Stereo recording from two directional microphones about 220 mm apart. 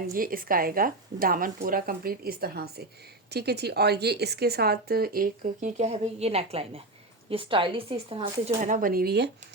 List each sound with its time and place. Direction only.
0.1 s a woman's voice: 40° right (ahead or behind)